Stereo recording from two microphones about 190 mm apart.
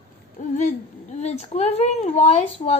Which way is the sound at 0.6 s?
40° left (ahead or behind).